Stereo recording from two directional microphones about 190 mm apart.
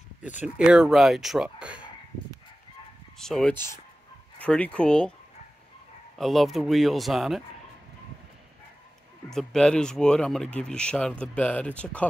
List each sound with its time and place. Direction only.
0.2 s speech: 10° right (ahead or behind)
3.2 s speech: 5° left (ahead or behind)
6.1 s speech: centre (ahead or behind)
9.3 s speech: centre (ahead or behind)